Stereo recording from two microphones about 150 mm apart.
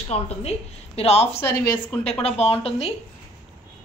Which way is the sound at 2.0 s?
40° left (ahead or behind).